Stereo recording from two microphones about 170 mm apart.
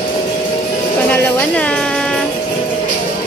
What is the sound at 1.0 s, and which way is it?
Music, 10° left (ahead or behind).